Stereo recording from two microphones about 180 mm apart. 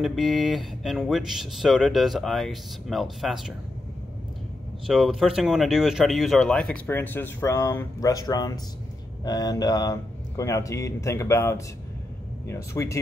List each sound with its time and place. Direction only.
0.0 s speech: centre (ahead or behind)
4.8 s speech: centre (ahead or behind); by 13.0 s 15° left (ahead or behind)